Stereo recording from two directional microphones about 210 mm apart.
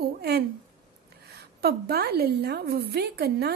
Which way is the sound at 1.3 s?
50° right (ahead or behind).